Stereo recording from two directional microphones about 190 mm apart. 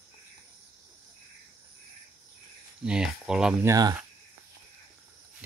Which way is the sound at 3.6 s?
20° right (ahead or behind).